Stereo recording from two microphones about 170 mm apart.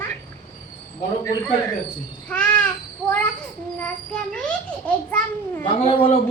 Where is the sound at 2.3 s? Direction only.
5° left (ahead or behind).